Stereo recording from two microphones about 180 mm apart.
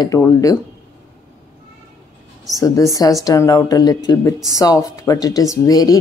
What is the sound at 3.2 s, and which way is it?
Speech, 20° left (ahead or behind).